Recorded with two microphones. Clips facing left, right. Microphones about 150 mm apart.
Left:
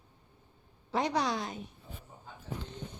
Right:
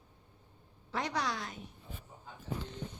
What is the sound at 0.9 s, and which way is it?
Speech, 20° left (ahead or behind).